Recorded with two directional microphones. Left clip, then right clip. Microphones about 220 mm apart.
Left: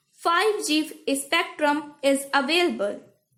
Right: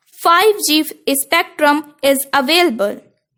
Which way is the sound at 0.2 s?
45° right (ahead or behind).